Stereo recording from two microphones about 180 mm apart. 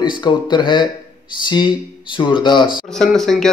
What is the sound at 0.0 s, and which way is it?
Speech, 25° left (ahead or behind).